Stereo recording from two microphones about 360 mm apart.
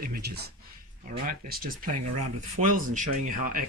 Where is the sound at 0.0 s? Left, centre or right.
Right.